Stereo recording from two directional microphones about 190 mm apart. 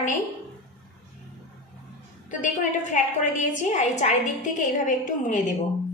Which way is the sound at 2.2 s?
40° left (ahead or behind).